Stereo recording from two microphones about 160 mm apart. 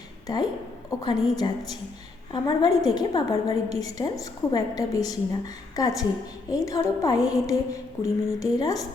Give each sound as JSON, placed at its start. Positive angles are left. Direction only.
{"t": 0.9, "sound": "a woman's voice", "side_deg": 25}